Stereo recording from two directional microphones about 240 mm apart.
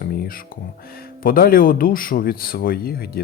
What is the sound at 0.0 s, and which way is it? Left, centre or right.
Speech, left.